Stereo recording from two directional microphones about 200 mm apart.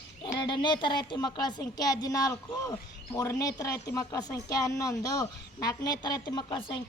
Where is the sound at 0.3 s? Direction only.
25° left (ahead or behind).